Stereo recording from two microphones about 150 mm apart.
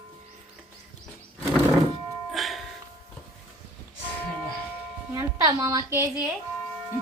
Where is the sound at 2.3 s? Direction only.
Centre (ahead or behind).